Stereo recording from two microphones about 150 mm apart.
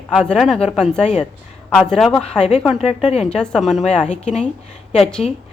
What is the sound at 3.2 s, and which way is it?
Speech, 5° left (ahead or behind).